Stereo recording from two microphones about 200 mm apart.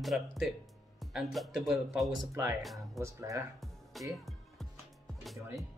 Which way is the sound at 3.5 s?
Centre (ahead or behind).